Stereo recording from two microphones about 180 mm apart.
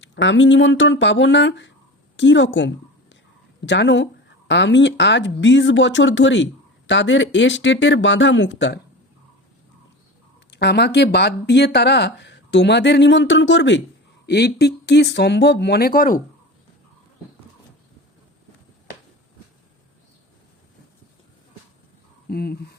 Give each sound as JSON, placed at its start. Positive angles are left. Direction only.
{"t": 0.0, "sound": "speech", "side_deg": 90}
{"t": 2.1, "sound": "a woman's voice", "side_deg": 90}
{"t": 10.5, "sound": "speech", "side_deg": 65}
{"t": 14.3, "sound": "speech", "side_deg": 65}
{"t": 22.3, "sound": "speech", "side_deg": 60}